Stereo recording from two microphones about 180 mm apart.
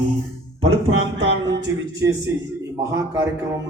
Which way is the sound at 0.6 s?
90° right.